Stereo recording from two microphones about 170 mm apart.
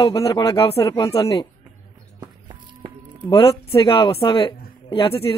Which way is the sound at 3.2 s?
30° left (ahead or behind).